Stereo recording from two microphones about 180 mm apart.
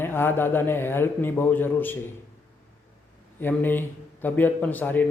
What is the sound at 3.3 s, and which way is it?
A man's voice, 10° left (ahead or behind).